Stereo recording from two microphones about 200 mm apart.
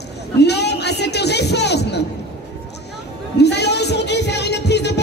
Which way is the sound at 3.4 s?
55° left (ahead or behind).